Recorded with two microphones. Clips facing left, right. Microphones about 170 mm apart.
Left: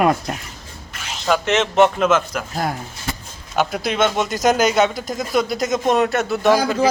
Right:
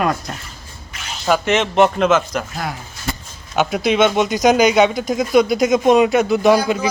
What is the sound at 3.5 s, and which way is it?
Speech, centre (ahead or behind).